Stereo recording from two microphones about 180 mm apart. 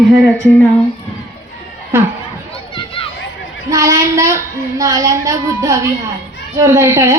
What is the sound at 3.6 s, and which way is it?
A woman's voice, 20° right (ahead or behind).